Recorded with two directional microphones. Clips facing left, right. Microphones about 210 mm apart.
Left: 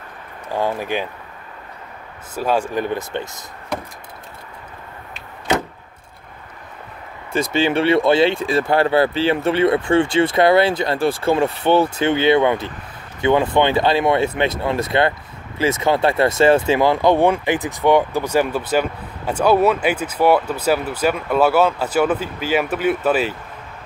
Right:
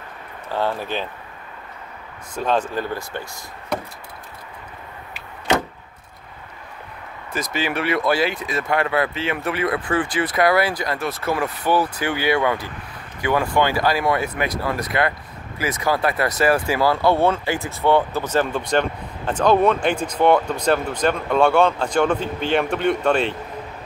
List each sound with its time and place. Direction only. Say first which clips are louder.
0.5 s speech: left 2 dB; 15° left (ahead or behind)
2.3 s speech: left 2 dB; 10° left (ahead or behind)
7.3 s speech: left 7 dB; 30° left (ahead or behind); by 23.3 s 5° left (ahead or behind)